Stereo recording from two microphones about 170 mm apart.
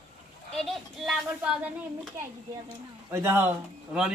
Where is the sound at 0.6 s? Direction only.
Centre (ahead or behind).